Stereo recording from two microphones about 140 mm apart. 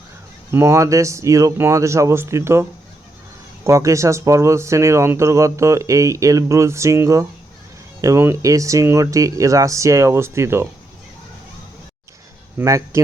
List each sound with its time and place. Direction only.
0.5 s speech: 20° right (ahead or behind)
12.5 s speech: 20° right (ahead or behind)